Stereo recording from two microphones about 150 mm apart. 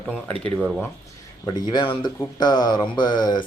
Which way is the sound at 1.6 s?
30° left (ahead or behind).